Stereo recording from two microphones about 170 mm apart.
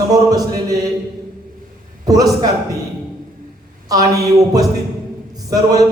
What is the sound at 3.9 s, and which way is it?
A man's voice, 20° right (ahead or behind).